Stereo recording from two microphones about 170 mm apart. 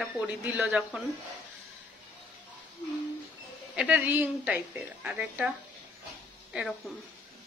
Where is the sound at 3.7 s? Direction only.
5° right (ahead or behind).